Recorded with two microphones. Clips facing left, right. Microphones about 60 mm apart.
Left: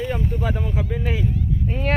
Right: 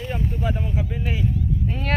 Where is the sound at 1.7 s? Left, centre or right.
Left.